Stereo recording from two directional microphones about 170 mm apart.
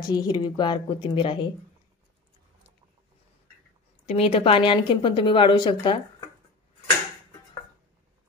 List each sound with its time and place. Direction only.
0.1 s speech: 25° left (ahead or behind)
4.1 s speech: 35° left (ahead or behind)